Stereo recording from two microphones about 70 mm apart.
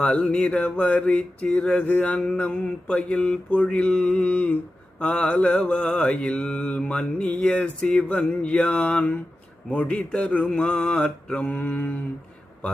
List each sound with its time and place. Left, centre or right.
0.0 s mantra: centre